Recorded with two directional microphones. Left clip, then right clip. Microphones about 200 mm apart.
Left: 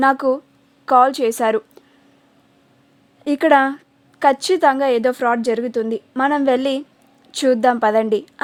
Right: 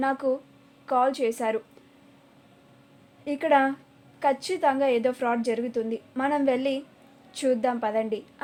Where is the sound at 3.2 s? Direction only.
50° left (ahead or behind).